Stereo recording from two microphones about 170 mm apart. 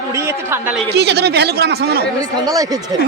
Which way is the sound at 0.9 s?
75° right (ahead or behind).